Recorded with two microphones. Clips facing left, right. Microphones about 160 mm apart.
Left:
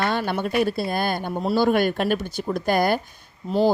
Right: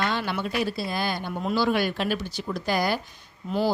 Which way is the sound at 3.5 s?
40° left (ahead or behind).